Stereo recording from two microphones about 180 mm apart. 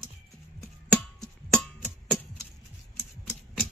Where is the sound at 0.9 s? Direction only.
5° left (ahead or behind).